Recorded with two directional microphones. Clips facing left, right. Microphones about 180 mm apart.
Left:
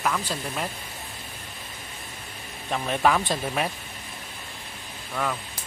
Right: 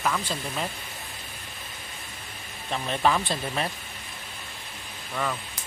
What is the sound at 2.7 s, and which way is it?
Speech, 5° left (ahead or behind).